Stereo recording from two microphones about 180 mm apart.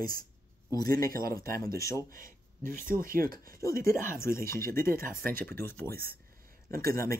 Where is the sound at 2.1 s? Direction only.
50° right (ahead or behind).